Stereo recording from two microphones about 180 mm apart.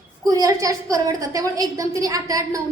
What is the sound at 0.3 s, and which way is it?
A woman's voice, 20° right (ahead or behind).